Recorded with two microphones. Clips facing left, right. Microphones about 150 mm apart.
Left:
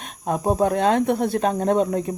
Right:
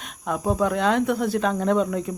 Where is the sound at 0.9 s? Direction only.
55° left (ahead or behind).